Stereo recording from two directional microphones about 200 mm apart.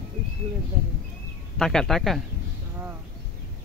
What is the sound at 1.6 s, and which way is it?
Speech, 5° left (ahead or behind).